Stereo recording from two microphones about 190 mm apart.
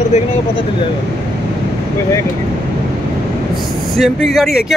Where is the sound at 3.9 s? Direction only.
Centre (ahead or behind).